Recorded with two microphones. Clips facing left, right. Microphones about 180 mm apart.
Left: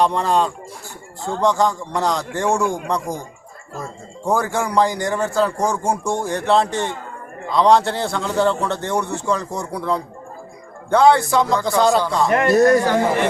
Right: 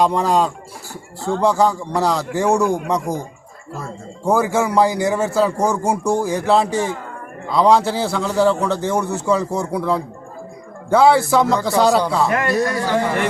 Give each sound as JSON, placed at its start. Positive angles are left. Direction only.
{"t": 0.0, "sound": "a man's voice", "side_deg": -10}
{"t": 4.3, "sound": "a man's voice", "side_deg": -5}
{"t": 12.5, "sound": "speech", "side_deg": 45}